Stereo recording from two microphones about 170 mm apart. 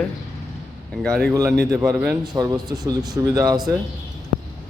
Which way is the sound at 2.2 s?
20° right (ahead or behind).